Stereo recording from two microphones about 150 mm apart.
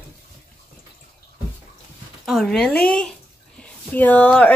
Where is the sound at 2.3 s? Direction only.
Centre (ahead or behind).